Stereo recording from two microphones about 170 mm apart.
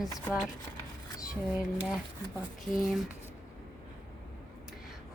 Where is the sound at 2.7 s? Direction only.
5° right (ahead or behind).